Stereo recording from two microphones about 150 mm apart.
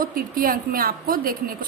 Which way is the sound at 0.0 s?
75° right (ahead or behind).